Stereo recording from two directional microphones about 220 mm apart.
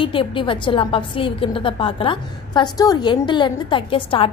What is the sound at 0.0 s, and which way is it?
A woman's voice, 25° left (ahead or behind).